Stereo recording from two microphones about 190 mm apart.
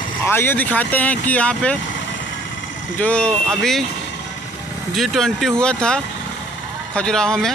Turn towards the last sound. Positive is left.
turn(degrees=5)  # may be behind; listen again after turning